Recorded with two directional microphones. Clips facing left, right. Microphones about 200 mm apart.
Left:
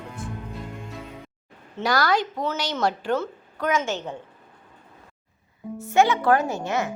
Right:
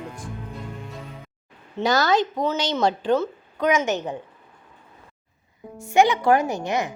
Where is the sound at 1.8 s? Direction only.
25° right (ahead or behind).